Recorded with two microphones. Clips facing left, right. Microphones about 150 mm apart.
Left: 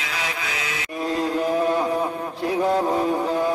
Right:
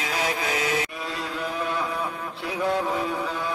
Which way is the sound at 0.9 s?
45° left (ahead or behind).